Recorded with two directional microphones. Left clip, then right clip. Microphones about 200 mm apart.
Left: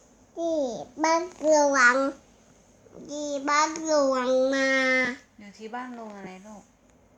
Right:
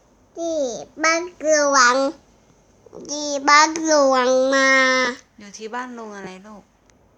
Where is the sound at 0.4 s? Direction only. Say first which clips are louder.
Right 4 dB; 15° right (ahead or behind).